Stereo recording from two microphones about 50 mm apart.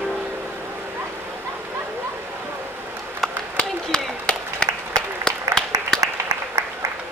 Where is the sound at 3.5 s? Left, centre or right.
Centre.